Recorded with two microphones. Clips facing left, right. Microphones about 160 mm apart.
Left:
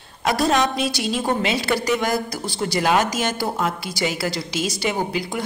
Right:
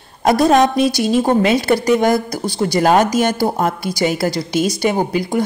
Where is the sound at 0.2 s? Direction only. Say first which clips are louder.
Right 7 dB; 45° right (ahead or behind).